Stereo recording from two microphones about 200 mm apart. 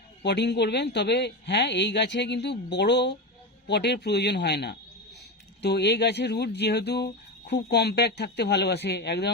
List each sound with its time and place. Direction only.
0.2 s speech: 60° left (ahead or behind)